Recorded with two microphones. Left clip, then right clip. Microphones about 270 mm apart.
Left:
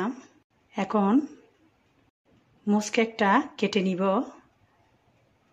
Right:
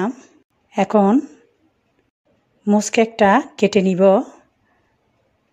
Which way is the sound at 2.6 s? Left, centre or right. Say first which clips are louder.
Right 9 dB; right.